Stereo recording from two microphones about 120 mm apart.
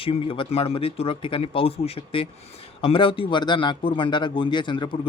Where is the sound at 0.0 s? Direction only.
50° left (ahead or behind).